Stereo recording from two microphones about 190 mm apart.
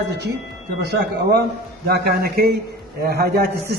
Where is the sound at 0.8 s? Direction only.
55° right (ahead or behind).